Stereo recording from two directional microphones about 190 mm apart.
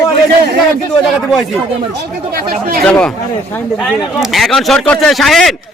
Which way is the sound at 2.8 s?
5° left (ahead or behind).